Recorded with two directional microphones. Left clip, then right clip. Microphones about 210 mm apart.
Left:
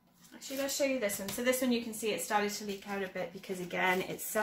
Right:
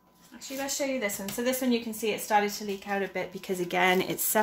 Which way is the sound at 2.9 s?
40° right (ahead or behind).